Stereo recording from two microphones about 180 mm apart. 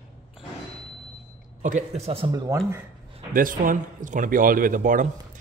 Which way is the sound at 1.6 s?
40° right (ahead or behind).